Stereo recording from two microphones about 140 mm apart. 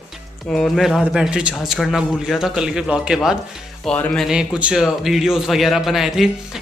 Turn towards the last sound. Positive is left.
turn(degrees=0)  # may be behind; listen again after turning